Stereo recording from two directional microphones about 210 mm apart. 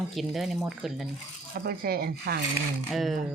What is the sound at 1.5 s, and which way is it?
Speech, 45° right (ahead or behind).